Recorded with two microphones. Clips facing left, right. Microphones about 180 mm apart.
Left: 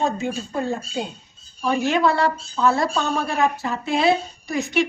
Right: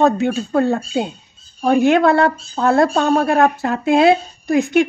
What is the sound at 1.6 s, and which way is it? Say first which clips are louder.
A woman's voice: right 7 dB; 55° right (ahead or behind).